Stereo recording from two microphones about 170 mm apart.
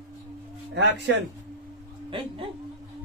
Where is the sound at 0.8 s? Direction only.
85° right.